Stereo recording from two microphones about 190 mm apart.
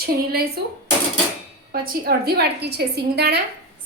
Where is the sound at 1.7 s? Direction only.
55° right (ahead or behind).